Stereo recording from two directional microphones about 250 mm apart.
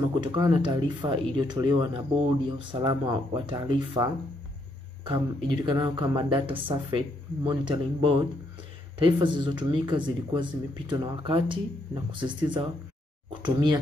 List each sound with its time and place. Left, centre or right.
0.2 s speech: centre
13.3 s speech: centre